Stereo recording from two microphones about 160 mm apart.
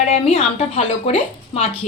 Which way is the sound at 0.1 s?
40° left (ahead or behind).